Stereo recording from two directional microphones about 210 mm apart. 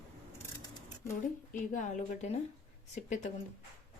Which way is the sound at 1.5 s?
40° left (ahead or behind).